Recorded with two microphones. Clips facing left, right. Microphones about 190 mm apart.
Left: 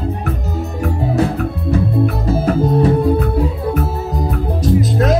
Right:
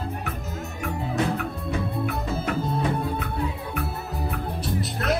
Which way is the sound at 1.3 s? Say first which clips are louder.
Left 8 dB; 35° left (ahead or behind).